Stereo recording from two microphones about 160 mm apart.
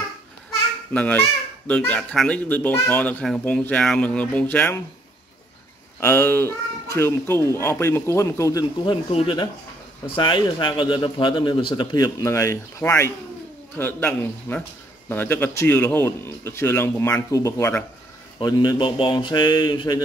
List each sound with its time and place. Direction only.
0.9 s speech: 10° left (ahead or behind)
5.9 s speech: 15° left (ahead or behind)
9.1 s speech: 35° left (ahead or behind); by 17.8 s 15° left (ahead or behind)
18.4 s speech: 25° left (ahead or behind)